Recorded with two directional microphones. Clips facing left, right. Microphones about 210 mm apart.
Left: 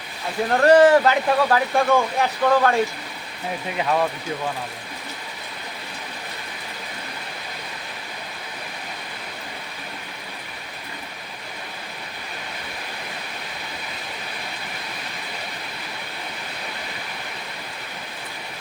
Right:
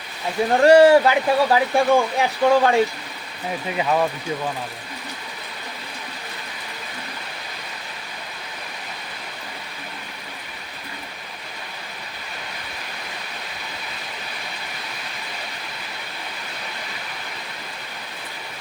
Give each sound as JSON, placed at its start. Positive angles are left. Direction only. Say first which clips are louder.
{"t": 0.5, "sound": "speech", "louder": "right 2 dB", "side_deg": -10}
{"t": 3.8, "sound": "speech", "louder": "right 1 dB", "side_deg": -5}